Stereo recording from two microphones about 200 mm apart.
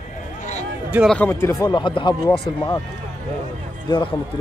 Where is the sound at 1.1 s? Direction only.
10° left (ahead or behind).